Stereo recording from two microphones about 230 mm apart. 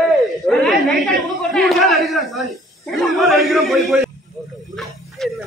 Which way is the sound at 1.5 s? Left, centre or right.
Centre.